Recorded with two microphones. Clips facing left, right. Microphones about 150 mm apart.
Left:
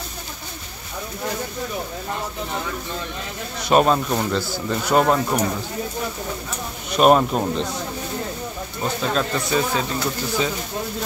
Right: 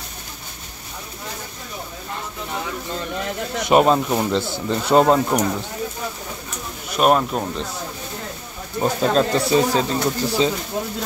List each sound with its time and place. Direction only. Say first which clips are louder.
3.6 s speech: right 1 dB; 20° right (ahead or behind)
7.0 s speech: left 2 dB; centre (ahead or behind)
8.8 s speech: right 5 dB; 35° right (ahead or behind)